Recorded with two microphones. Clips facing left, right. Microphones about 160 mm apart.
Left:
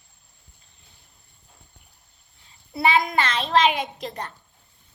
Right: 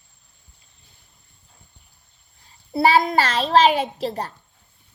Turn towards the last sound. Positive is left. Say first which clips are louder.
# right 6 dB
turn(degrees=-35)  # may be behind; listen again after turning